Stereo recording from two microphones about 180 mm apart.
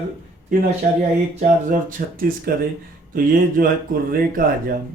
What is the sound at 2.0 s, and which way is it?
Speech, 55° right (ahead or behind).